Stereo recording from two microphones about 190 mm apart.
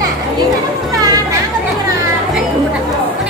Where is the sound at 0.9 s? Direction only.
20° right (ahead or behind).